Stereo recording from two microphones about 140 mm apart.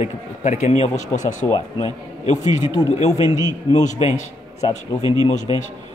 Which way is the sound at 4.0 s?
45° left (ahead or behind).